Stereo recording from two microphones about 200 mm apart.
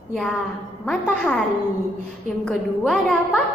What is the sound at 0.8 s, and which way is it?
Speech, 5° left (ahead or behind).